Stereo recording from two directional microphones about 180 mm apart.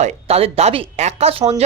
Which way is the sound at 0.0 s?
35° right (ahead or behind).